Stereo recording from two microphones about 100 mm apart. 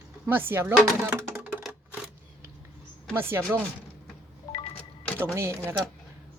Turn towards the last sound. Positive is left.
turn(degrees=-25)  # may be behind; listen again after turning